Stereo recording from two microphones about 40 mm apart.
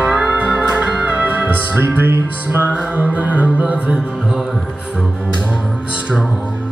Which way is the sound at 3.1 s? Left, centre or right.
Right.